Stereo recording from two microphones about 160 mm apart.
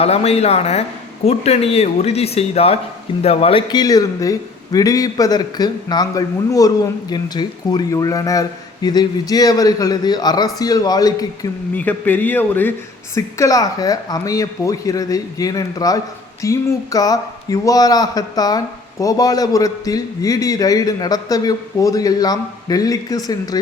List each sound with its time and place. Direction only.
0.0 s a man's voice: 40° left (ahead or behind); by 11.3 s 25° left (ahead or behind)
11.7 s a man's voice: 10° left (ahead or behind)